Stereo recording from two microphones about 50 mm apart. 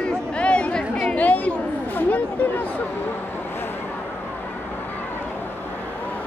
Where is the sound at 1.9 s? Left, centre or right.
Left.